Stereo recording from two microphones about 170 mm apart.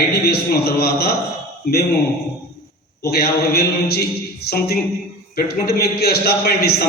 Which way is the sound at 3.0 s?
65° left (ahead or behind).